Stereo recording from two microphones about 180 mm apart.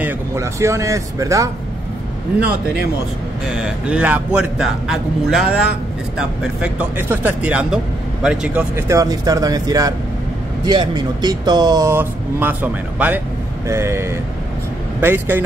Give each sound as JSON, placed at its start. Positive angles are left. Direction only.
{"t": 0.0, "sound": "speech", "side_deg": -15}
{"t": 3.5, "sound": "a man's voice", "side_deg": -5}